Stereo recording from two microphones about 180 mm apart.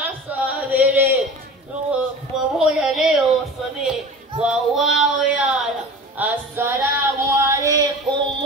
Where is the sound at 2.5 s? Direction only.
Centre (ahead or behind).